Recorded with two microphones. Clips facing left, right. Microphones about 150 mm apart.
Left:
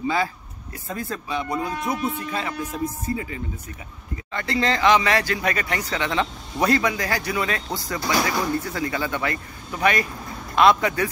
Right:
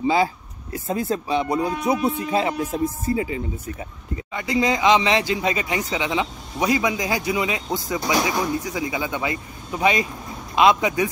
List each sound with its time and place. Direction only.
0.0 s speech: 25° right (ahead or behind)
4.3 s a man's voice: 10° right (ahead or behind)